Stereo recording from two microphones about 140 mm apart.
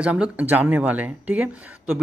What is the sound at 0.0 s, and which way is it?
Speech, 10° right (ahead or behind).